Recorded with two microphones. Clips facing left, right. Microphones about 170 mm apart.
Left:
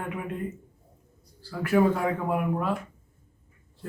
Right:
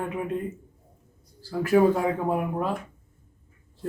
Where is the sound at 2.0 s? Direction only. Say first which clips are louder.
Right 2 dB; 25° right (ahead or behind).